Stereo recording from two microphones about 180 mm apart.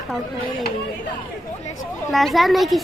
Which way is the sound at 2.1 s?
Centre (ahead or behind).